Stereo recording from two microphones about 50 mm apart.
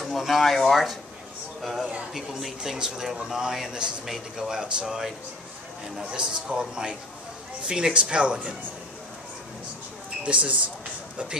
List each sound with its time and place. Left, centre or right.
0.0 s speech: centre; by 8.5 s right
10.2 s speech: right